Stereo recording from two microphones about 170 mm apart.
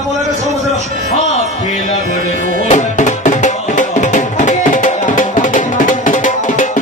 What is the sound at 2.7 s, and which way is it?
Music, 45° left (ahead or behind).